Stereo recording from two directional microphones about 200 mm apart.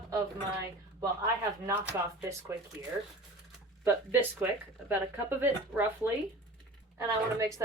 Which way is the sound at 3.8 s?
10° right (ahead or behind).